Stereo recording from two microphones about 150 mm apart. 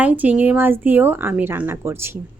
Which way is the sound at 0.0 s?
10° right (ahead or behind).